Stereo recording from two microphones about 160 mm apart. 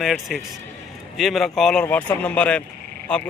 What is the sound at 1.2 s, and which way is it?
A man's voice, centre (ahead or behind).